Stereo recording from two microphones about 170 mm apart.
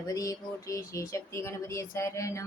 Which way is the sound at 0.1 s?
20° left (ahead or behind).